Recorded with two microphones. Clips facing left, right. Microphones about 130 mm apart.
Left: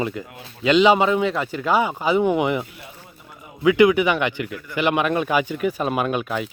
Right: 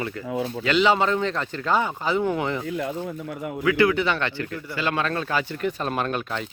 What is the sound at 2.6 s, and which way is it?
Speech, 90° right.